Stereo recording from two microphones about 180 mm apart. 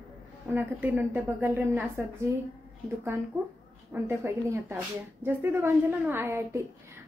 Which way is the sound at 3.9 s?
15° right (ahead or behind).